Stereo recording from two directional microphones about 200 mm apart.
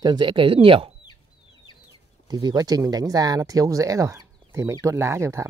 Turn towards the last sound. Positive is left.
turn(degrees=-15)  # may be behind; listen again after turning